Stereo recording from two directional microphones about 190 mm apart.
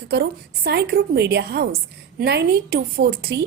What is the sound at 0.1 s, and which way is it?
A woman's voice, 60° right (ahead or behind).